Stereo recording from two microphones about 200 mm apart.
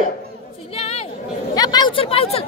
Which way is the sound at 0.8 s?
30° left (ahead or behind).